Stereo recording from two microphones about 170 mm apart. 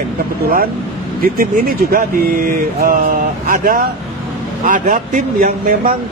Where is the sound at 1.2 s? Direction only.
60° right (ahead or behind).